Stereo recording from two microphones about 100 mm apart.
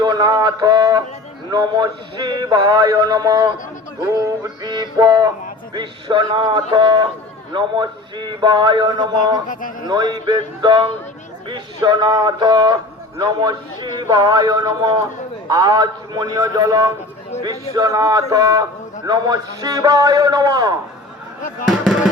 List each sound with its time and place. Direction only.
0.0 s a man's voice: 40° right (ahead or behind)
2.6 s a man's voice: 35° right (ahead or behind)